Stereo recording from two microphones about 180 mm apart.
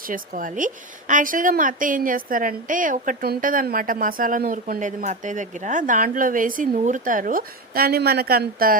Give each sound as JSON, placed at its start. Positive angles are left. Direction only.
{"t": 0.1, "sound": "a woman's voice", "side_deg": -50}